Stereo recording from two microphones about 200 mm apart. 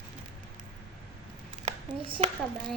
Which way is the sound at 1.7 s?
25° right (ahead or behind).